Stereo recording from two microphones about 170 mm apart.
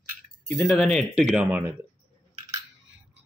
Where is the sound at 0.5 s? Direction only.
Centre (ahead or behind).